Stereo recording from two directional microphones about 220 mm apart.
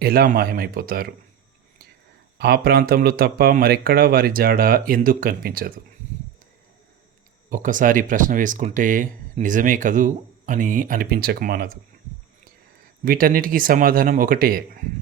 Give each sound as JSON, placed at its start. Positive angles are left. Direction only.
{"t": 0.0, "sound": "speech", "side_deg": -45}
{"t": 2.4, "sound": "speech", "side_deg": -45}
{"t": 7.5, "sound": "speech", "side_deg": -35}
{"t": 13.1, "sound": "speech", "side_deg": -40}